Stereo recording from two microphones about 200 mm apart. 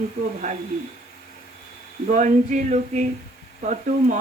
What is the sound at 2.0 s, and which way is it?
Speech, 40° right (ahead or behind).